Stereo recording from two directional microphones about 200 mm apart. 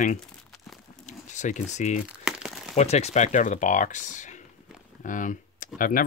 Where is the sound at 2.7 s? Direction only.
35° left (ahead or behind).